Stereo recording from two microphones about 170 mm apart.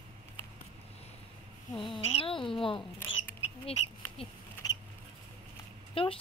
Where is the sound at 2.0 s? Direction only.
35° left (ahead or behind).